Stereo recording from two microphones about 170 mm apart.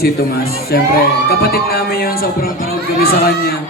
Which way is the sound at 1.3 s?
65° left (ahead or behind).